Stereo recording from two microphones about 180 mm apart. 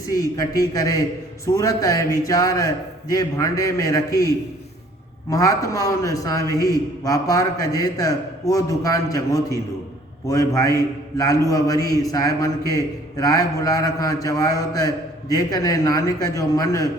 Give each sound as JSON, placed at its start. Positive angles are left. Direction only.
{"t": 0.1, "sound": "a man's voice", "side_deg": 20}